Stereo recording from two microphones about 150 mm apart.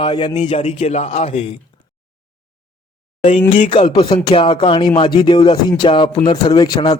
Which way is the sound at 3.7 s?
35° left (ahead or behind).